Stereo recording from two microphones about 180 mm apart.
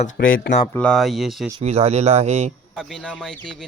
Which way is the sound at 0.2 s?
60° left (ahead or behind).